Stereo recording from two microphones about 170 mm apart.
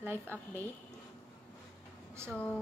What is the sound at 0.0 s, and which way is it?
Speech, 15° right (ahead or behind).